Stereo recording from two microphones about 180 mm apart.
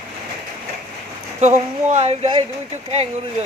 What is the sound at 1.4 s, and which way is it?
A woman's voice, 40° right (ahead or behind).